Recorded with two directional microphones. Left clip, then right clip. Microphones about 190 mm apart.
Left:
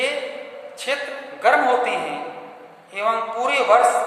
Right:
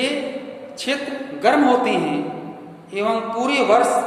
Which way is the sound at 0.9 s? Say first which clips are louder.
Right 1 dB; 20° right (ahead or behind).